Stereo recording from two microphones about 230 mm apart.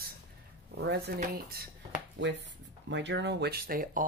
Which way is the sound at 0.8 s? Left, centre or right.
Right.